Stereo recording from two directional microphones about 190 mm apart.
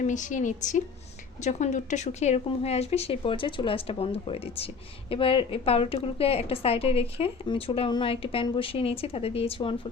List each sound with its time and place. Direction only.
0.0 s speech: 40° left (ahead or behind)